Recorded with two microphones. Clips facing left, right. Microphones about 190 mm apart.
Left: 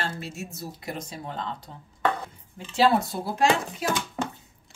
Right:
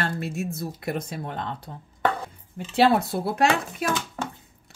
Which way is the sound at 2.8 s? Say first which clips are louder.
Right 2 dB; 60° right (ahead or behind).